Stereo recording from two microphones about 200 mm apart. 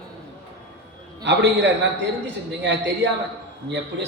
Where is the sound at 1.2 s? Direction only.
60° right (ahead or behind).